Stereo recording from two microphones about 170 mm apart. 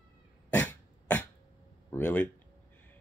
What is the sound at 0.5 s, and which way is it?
Cough, 10° left (ahead or behind).